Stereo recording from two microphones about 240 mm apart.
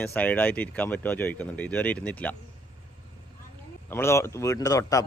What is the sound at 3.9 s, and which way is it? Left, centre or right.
Speech, centre.